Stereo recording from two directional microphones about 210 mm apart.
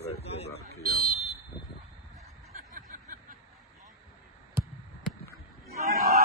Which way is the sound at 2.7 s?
35° right (ahead or behind).